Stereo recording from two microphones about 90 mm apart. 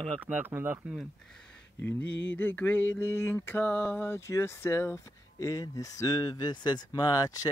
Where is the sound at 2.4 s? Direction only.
20° left (ahead or behind).